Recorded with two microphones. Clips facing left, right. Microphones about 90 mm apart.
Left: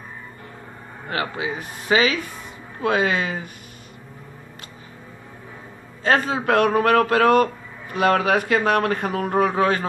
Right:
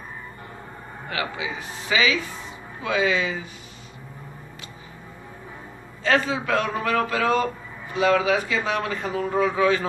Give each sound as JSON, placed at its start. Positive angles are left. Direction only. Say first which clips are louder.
{"t": 1.0, "sound": "speech", "louder": "left 3 dB", "side_deg": 40}
{"t": 6.0, "sound": "a man's voice", "louder": "left 2 dB", "side_deg": 45}